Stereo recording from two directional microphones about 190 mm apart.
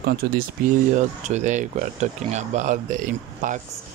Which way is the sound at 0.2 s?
55° right (ahead or behind).